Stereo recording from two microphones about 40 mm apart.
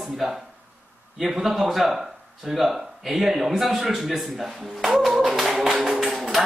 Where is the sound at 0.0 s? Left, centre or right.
Centre.